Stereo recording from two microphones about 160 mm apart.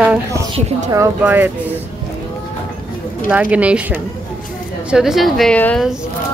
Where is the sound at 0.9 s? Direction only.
20° right (ahead or behind).